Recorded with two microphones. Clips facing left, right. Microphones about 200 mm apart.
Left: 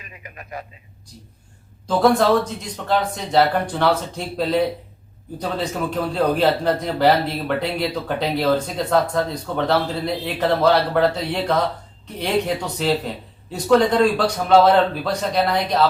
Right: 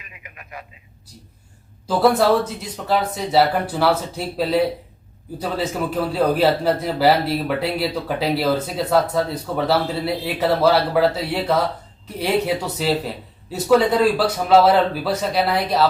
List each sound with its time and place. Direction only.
0.0 s radio: 35° left (ahead or behind)
1.9 s a man's voice: 5° right (ahead or behind)